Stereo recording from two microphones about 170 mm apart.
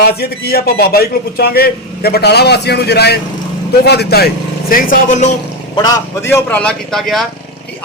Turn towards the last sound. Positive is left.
turn(degrees=0)  # may be behind; listen again after turning